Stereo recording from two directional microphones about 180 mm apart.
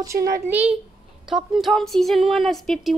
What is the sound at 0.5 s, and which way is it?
A child's voice, 10° right (ahead or behind).